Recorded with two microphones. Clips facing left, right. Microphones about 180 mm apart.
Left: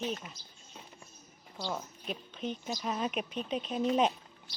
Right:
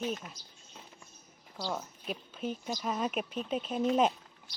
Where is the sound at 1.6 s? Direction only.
Centre (ahead or behind).